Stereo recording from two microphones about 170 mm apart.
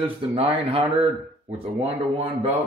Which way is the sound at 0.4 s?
35° right (ahead or behind).